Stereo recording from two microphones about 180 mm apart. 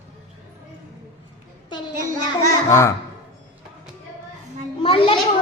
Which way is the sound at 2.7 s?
15° left (ahead or behind).